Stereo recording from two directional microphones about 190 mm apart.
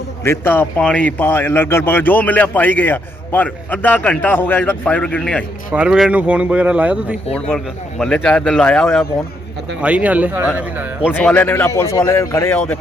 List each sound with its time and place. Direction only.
0.3 s speech: 10° left (ahead or behind)
5.7 s speech: 5° right (ahead or behind)
7.3 s a man's voice: 5° left (ahead or behind)
9.8 s speech: 10° right (ahead or behind)
11.1 s speech: 10° left (ahead or behind)